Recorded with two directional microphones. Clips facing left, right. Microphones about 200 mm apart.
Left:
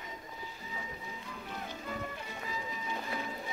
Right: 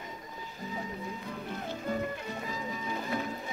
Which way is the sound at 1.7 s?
45° right (ahead or behind).